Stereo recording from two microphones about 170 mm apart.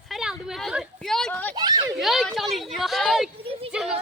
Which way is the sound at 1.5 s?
25° right (ahead or behind).